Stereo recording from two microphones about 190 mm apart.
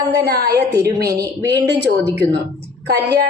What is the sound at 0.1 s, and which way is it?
Speech, 60° right (ahead or behind).